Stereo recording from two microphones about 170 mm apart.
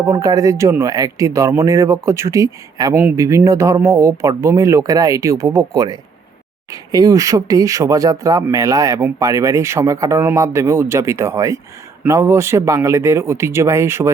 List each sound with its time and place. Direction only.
0.0 s speech: 20° right (ahead or behind)